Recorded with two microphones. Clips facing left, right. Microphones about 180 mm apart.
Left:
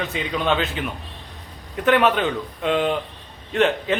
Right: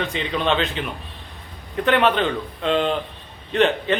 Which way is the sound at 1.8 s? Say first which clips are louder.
Left 1 dB; 5° left (ahead or behind).